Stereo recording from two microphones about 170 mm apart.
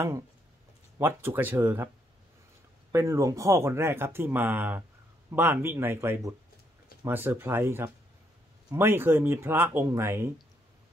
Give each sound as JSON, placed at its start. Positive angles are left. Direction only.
{"t": 0.9, "sound": "speech", "side_deg": -15}
{"t": 2.9, "sound": "speech", "side_deg": -15}